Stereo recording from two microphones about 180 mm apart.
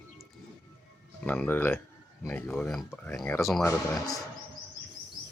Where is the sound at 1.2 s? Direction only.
10° left (ahead or behind).